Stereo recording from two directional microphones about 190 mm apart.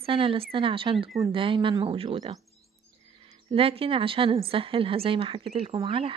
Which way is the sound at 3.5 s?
30° right (ahead or behind).